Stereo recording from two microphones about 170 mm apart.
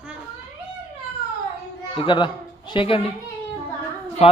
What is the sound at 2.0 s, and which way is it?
Speech, 25° left (ahead or behind).